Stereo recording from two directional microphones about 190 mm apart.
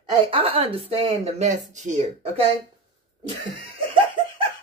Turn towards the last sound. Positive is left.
turn(degrees=-25)  # may be behind; listen again after turning